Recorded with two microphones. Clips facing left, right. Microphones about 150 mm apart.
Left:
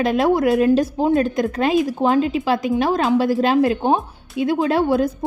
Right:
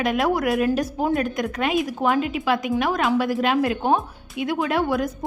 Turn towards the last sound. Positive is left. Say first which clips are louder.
# left 5 dB
turn(degrees=30)  # may be behind; listen again after turning